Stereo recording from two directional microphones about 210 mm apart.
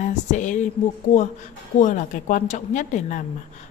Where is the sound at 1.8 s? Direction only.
35° left (ahead or behind).